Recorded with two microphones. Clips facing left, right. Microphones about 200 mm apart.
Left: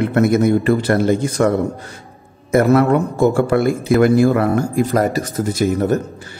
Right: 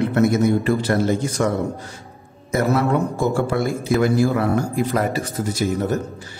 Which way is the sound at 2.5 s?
55° left (ahead or behind).